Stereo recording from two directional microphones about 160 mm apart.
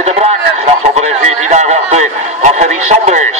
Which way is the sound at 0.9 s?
45° right (ahead or behind).